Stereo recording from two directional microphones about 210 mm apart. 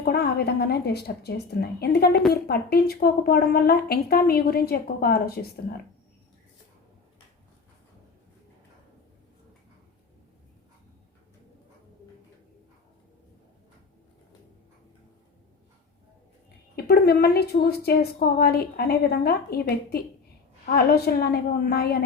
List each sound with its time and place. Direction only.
0.0 s a woman's voice: 50° left (ahead or behind)
16.7 s a woman's voice: 50° left (ahead or behind)